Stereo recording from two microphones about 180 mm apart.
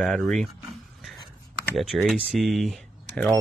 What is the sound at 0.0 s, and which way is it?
Speech, centre (ahead or behind).